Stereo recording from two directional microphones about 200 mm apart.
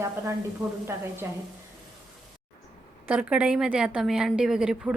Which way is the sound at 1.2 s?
15° right (ahead or behind).